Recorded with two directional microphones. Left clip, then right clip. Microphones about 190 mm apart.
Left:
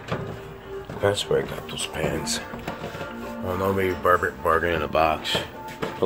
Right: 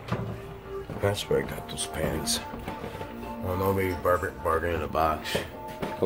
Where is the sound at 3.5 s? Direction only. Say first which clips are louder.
Left 3 dB; 5° left (ahead or behind).